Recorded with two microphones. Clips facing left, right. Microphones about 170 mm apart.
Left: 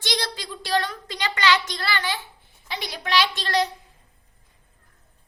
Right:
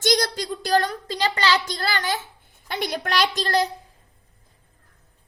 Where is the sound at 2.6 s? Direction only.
50° right (ahead or behind).